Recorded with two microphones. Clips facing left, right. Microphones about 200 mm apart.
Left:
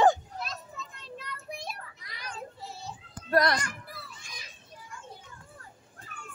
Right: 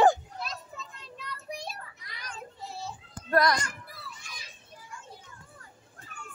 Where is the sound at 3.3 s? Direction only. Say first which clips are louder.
Even; 35° left (ahead or behind).